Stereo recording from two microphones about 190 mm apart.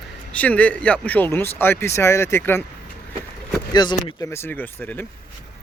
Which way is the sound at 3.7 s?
25° left (ahead or behind).